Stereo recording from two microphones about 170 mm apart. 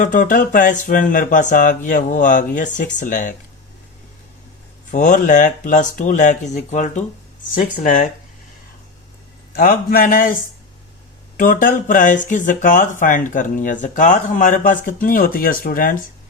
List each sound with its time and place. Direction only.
0.0 s speech: 50° left (ahead or behind)
4.9 s speech: 45° left (ahead or behind)
9.6 s a man's voice: 60° left (ahead or behind)